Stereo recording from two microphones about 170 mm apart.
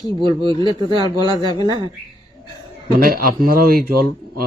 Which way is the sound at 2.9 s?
60° right (ahead or behind).